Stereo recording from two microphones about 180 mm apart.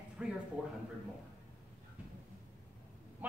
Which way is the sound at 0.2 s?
5° right (ahead or behind).